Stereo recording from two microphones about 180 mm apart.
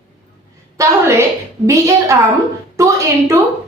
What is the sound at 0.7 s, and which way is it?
A woman's voice, 15° right (ahead or behind).